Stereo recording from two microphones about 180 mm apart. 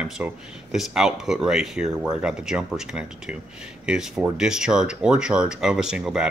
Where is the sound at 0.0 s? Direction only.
5° right (ahead or behind).